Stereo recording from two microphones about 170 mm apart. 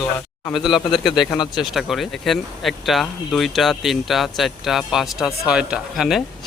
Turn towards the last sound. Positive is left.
turn(degrees=0)  # may be behind; listen again after turning